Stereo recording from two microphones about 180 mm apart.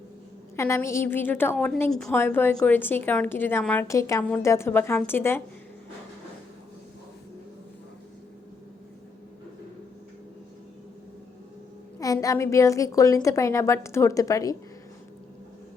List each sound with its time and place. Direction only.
0.5 s a woman's voice: 15° left (ahead or behind)
11.9 s a woman's voice: 20° left (ahead or behind)